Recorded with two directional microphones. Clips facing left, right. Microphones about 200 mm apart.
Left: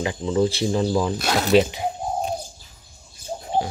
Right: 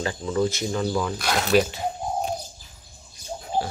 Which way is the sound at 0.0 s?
20° left (ahead or behind).